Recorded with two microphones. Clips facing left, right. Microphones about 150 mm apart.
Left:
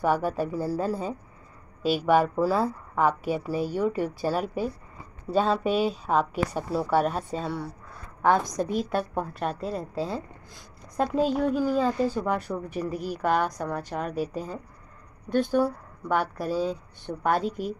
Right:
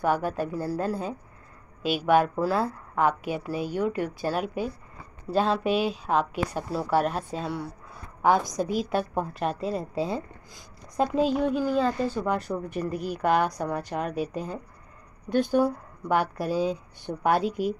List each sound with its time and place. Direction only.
0.0 s a woman's voice: 5° left (ahead or behind)
1.8 s a woman's voice: 35° left (ahead or behind)
2.0 s a woman's voice: centre (ahead or behind)